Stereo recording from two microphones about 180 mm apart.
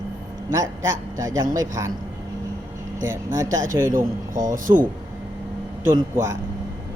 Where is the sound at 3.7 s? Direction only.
45° right (ahead or behind).